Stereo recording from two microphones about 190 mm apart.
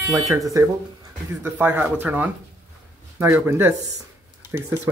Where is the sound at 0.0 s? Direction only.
15° right (ahead or behind).